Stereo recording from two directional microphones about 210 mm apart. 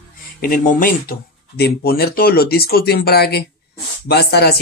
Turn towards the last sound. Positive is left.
turn(degrees=50)  # may be behind; listen again after turning